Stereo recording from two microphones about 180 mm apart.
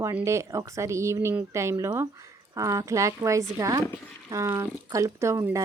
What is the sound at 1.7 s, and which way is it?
Speech, 25° right (ahead or behind).